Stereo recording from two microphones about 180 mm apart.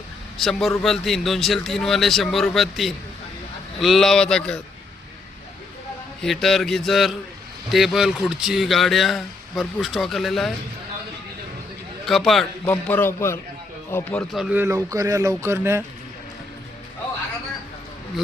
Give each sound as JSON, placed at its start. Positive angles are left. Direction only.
{"t": 0.3, "sound": "speech", "side_deg": 0}
{"t": 6.2, "sound": "speech", "side_deg": 0}
{"t": 12.0, "sound": "speech", "side_deg": 0}
{"t": 12.7, "sound": "a man's voice", "side_deg": 10}
{"t": 14.5, "sound": "speech", "side_deg": -15}